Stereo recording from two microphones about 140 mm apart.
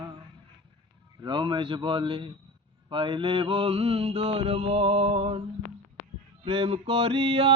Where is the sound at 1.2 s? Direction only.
35° right (ahead or behind).